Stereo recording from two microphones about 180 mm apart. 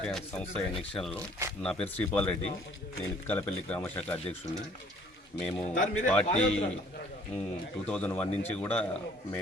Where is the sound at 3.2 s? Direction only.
10° left (ahead or behind).